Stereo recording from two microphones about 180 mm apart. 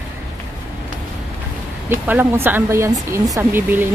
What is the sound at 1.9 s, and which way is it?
A woman's voice, 10° right (ahead or behind).